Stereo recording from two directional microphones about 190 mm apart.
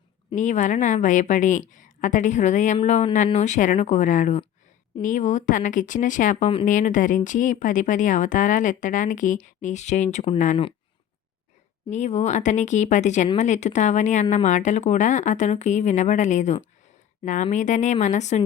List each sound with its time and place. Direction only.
0.3 s a woman's voice: 40° left (ahead or behind)
11.9 s a woman's voice: 35° left (ahead or behind)